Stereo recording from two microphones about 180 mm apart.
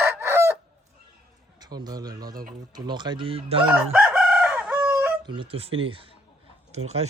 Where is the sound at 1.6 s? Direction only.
20° right (ahead or behind).